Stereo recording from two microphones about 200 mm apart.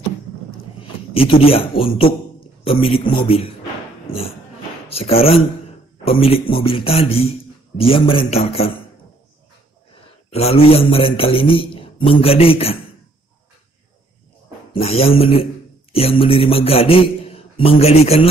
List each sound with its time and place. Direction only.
1.1 s a man's voice: 30° left (ahead or behind)
4.1 s speech: 45° left (ahead or behind)
4.8 s a man's voice: 30° left (ahead or behind)
10.3 s a man's voice: 30° left (ahead or behind)
14.7 s a man's voice: 30° left (ahead or behind)